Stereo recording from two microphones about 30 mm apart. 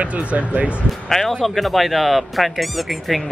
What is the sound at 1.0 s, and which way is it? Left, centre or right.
Speech, centre.